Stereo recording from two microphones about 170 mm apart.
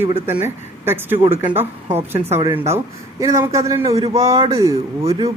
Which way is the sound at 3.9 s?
35° right (ahead or behind).